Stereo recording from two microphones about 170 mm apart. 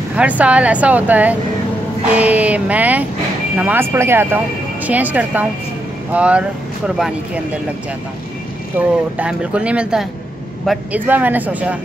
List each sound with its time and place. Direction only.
0.1 s speech: 5° right (ahead or behind)
8.7 s speech: 10° right (ahead or behind)